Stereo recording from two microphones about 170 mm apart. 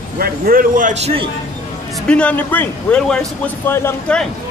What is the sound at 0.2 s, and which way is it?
Speech, 60° right (ahead or behind).